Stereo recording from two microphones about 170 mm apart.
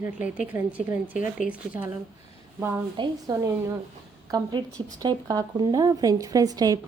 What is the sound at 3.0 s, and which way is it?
A woman's voice, 20° right (ahead or behind).